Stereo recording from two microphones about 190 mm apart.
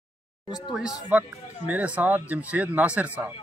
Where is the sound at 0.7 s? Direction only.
5° right (ahead or behind).